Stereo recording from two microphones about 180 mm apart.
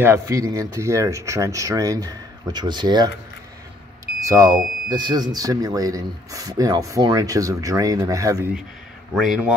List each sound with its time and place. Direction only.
0.0 s speech: 15° right (ahead or behind)
4.0 s smoke detector: 20° right (ahead or behind)
4.8 s speech: 25° right (ahead or behind)
9.1 s speech: centre (ahead or behind)